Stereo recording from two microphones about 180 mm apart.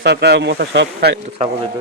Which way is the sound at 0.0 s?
65° right (ahead or behind).